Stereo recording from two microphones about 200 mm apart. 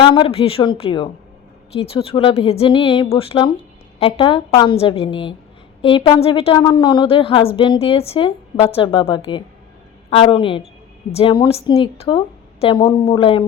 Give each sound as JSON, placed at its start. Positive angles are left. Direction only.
{"t": 0.0, "sound": "a woman's voice", "side_deg": 25}